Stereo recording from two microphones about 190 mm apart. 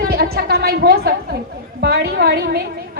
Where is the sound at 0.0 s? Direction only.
55° right (ahead or behind).